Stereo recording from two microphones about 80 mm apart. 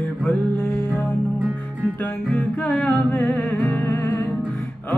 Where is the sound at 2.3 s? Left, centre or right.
Centre.